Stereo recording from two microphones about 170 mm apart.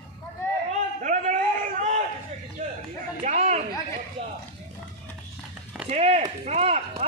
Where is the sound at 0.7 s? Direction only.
45° right (ahead or behind).